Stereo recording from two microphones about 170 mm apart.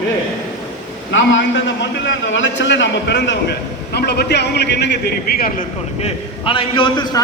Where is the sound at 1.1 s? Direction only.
90° left.